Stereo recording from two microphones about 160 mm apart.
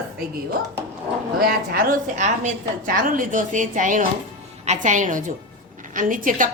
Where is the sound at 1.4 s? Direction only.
65° right (ahead or behind).